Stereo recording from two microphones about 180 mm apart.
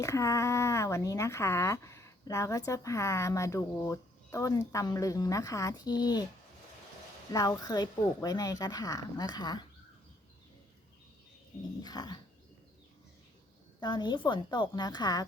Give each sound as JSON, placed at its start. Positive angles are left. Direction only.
{"t": 0.0, "sound": "speech", "side_deg": 15}
{"t": 7.3, "sound": "speech", "side_deg": 20}
{"t": 11.8, "sound": "speech", "side_deg": 20}
{"t": 13.7, "sound": "speech", "side_deg": 25}